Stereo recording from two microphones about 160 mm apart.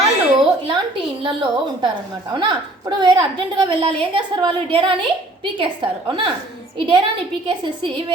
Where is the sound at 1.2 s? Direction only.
30° right (ahead or behind).